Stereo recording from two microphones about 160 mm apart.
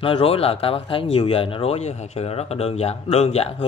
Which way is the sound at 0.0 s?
35° left (ahead or behind).